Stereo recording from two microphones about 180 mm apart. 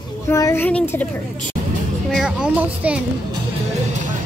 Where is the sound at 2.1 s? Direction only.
5° right (ahead or behind).